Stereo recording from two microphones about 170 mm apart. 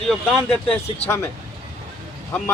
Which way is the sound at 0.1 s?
5° left (ahead or behind).